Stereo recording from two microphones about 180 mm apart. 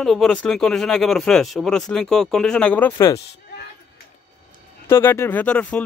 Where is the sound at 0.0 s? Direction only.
5° left (ahead or behind).